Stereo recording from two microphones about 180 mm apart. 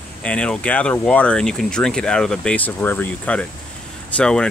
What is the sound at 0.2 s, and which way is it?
Speech, 5° left (ahead or behind).